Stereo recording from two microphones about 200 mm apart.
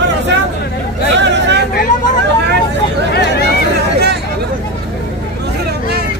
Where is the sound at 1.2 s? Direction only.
60° right (ahead or behind).